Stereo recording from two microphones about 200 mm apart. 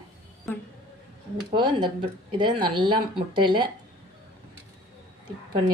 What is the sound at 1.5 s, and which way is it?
A woman's voice, 25° right (ahead or behind).